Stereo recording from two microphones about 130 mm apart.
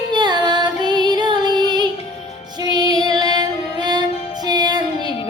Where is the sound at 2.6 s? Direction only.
30° right (ahead or behind).